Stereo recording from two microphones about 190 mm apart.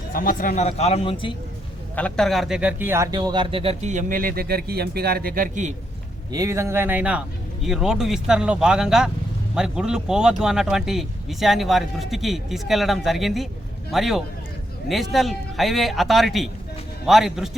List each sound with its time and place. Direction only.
0.1 s a man's voice: 45° left (ahead or behind); by 1.3 s 30° left (ahead or behind)
2.0 s speech: 5° left (ahead or behind); by 5.7 s 45° right (ahead or behind)
6.3 s speech: 15° right (ahead or behind)